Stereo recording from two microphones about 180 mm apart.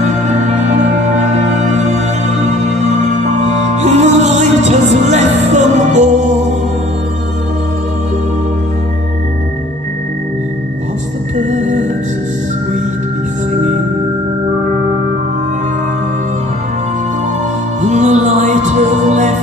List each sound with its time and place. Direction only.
0.3 s music: 40° right (ahead or behind)
11.3 s music: 45° right (ahead or behind)
17.8 s music: 40° right (ahead or behind)